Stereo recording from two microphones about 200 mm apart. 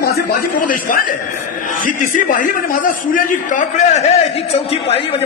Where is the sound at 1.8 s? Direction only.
40° left (ahead or behind).